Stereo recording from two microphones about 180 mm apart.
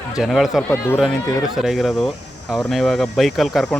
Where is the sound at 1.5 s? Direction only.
Centre (ahead or behind).